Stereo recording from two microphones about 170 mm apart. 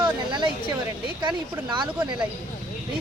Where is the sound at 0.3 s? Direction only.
30° right (ahead or behind).